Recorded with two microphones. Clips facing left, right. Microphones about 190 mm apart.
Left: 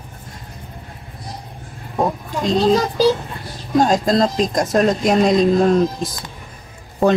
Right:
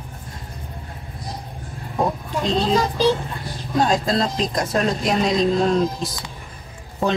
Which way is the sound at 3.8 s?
45° left (ahead or behind).